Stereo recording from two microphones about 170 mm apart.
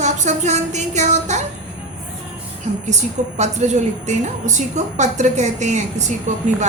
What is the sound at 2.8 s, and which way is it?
A woman's voice, 45° right (ahead or behind).